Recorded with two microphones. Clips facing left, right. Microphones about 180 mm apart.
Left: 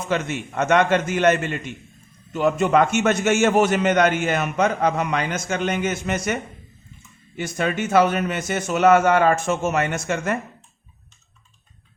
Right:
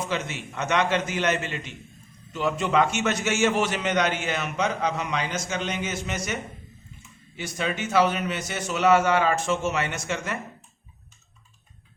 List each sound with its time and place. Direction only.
0.1 s a man's voice: 50° left (ahead or behind)